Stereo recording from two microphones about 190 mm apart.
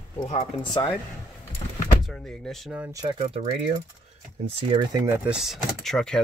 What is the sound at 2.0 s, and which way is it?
Speech, centre (ahead or behind).